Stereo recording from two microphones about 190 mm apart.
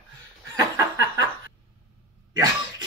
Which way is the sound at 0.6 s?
20° right (ahead or behind).